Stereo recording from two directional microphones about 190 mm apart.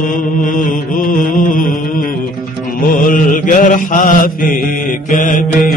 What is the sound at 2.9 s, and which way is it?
Mantra, 45° left (ahead or behind).